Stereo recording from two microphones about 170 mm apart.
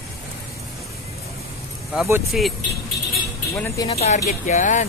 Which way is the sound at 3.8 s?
40° left (ahead or behind).